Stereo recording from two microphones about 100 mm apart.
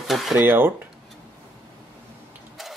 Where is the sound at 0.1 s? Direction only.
Centre (ahead or behind).